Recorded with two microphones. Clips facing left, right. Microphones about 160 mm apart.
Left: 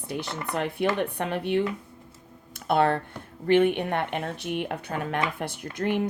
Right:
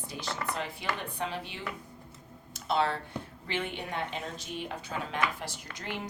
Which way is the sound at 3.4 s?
55° left (ahead or behind).